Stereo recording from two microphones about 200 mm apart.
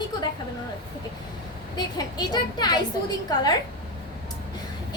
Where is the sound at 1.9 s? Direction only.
20° left (ahead or behind).